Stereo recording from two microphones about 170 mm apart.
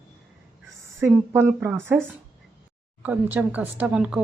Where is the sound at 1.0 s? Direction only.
10° right (ahead or behind).